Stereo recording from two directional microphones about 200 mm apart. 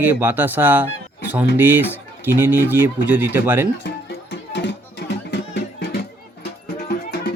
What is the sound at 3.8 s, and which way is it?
Music, 60° left (ahead or behind).